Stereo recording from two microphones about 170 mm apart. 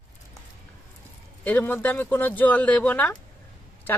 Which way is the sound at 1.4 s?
10° left (ahead or behind).